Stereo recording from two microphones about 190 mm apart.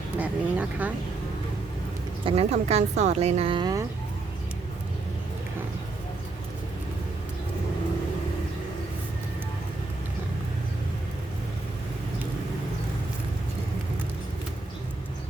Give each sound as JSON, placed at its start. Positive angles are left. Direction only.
{"t": 0.2, "sound": "speech", "side_deg": -10}
{"t": 2.2, "sound": "a woman's voice", "side_deg": -35}